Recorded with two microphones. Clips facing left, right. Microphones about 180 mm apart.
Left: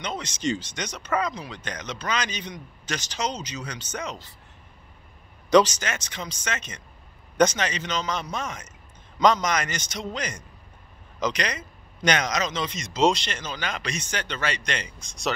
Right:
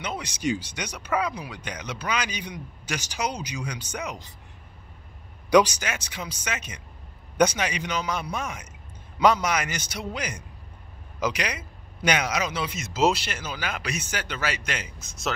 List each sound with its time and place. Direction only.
0.0 s speech: 10° right (ahead or behind)
5.5 s speech: 10° right (ahead or behind)